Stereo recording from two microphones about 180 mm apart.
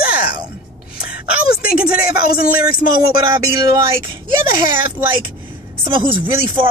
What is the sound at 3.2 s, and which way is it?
Speech, 15° right (ahead or behind).